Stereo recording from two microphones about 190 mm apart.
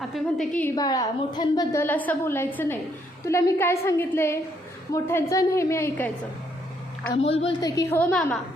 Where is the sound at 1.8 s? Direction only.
10° left (ahead or behind).